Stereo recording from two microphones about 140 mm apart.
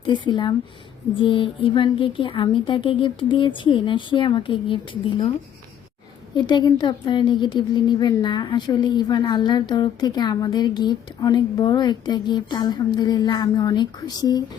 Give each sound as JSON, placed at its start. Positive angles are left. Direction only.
{"t": 0.0, "sound": "a woman's voice", "side_deg": 35}
{"t": 6.3, "sound": "a woman's voice", "side_deg": 35}